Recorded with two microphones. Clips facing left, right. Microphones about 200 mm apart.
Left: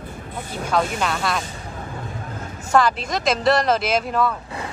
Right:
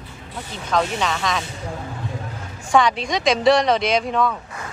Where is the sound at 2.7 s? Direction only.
5° left (ahead or behind).